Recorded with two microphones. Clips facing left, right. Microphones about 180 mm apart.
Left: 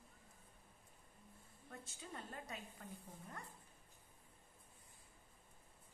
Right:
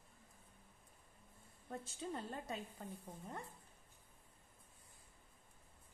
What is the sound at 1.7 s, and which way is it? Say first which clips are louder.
A woman's voice: right 8 dB; 30° right (ahead or behind).